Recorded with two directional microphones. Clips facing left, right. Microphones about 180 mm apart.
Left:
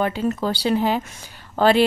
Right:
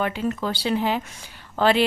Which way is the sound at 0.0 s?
35° left (ahead or behind).